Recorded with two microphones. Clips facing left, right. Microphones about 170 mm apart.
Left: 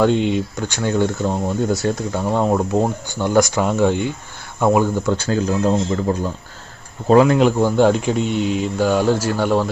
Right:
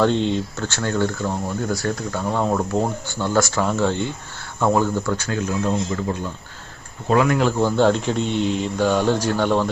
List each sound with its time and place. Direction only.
0.0 s speech: 10° left (ahead or behind)
5.1 s speech: 30° left (ahead or behind)
7.4 s speech: 10° left (ahead or behind)